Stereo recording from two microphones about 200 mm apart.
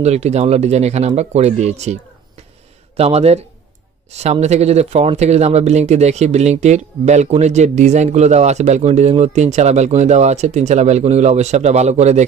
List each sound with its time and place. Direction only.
0.0 s speech: 35° right (ahead or behind)
3.0 s speech: 30° right (ahead or behind)